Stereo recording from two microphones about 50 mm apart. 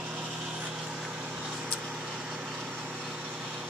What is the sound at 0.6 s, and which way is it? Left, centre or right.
Vehicle, centre.